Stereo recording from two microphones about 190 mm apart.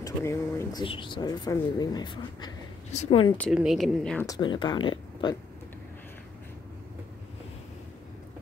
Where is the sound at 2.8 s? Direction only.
35° left (ahead or behind).